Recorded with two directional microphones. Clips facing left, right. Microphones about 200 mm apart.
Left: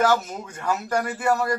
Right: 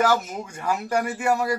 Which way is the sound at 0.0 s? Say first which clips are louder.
Even; 10° right (ahead or behind).